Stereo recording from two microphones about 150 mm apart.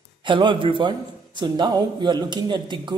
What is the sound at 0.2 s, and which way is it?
A man's voice, 30° right (ahead or behind).